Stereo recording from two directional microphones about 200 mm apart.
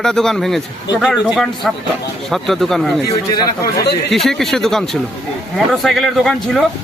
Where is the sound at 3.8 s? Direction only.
55° left (ahead or behind).